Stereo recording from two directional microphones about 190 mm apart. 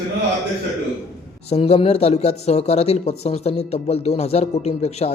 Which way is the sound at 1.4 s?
35° left (ahead or behind).